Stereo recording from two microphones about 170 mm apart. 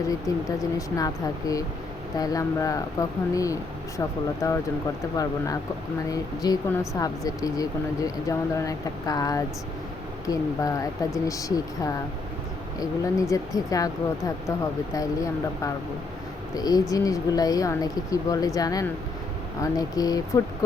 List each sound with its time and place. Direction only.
0.3 s speech: 20° left (ahead or behind)
13.3 s speech: 20° left (ahead or behind)